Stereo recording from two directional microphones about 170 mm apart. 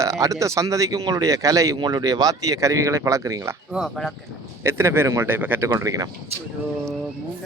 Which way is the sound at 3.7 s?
Centre (ahead or behind).